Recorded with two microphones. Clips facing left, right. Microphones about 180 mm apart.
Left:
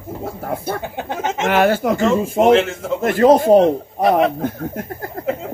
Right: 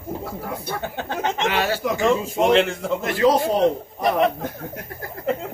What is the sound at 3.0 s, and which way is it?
A man's voice, 50° left (ahead or behind).